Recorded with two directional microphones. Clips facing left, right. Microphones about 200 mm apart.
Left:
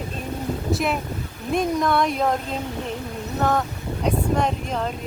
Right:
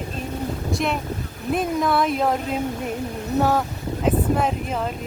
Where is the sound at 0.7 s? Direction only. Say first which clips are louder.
Left 1 dB; centre (ahead or behind).